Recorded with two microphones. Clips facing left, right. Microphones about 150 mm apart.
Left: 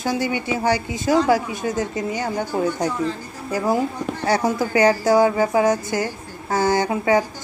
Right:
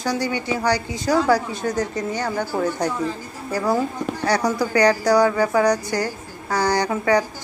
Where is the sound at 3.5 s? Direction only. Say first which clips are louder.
Left 1 dB; 15° left (ahead or behind).